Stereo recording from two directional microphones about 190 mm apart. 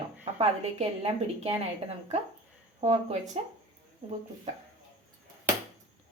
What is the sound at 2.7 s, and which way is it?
Speech, 35° right (ahead or behind).